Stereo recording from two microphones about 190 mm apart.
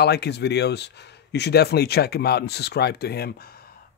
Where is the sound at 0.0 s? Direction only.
60° left (ahead or behind).